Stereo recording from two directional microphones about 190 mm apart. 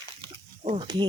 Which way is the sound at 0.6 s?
25° right (ahead or behind).